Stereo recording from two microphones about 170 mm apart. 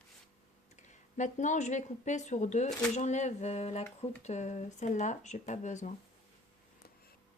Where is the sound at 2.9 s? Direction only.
45° left (ahead or behind).